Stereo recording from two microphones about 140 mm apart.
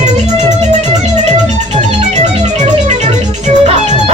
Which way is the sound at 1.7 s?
55° right (ahead or behind).